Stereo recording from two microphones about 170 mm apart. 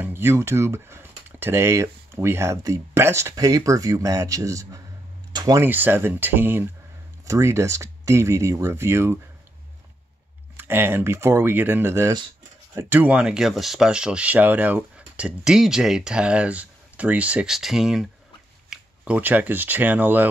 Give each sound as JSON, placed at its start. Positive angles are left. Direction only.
{"t": 0.0, "sound": "speech", "side_deg": -15}
{"t": 10.6, "sound": "speech", "side_deg": -10}